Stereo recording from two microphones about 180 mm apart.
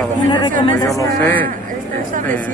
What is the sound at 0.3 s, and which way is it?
Speech, 25° left (ahead or behind).